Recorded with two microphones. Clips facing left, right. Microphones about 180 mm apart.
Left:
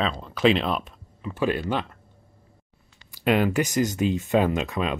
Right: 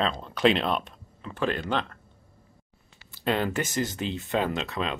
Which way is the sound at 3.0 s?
15° left (ahead or behind).